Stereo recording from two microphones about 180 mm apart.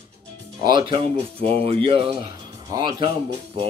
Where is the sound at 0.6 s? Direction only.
25° right (ahead or behind).